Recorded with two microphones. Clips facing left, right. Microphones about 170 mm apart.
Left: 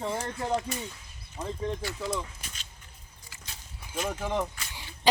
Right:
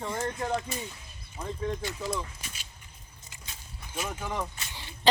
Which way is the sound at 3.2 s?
25° right (ahead or behind).